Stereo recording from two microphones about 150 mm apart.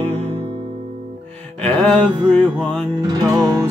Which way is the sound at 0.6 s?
40° right (ahead or behind).